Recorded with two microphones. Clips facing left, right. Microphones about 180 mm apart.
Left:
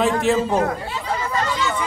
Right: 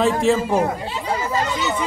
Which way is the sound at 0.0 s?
Centre (ahead or behind).